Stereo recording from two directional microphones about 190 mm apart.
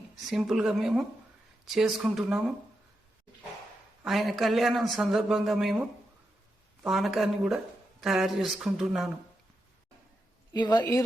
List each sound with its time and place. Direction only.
0.3 s a man's voice: centre (ahead or behind)
4.0 s a man's voice: centre (ahead or behind)
6.8 s a man's voice: centre (ahead or behind)
10.5 s speech: 20° left (ahead or behind)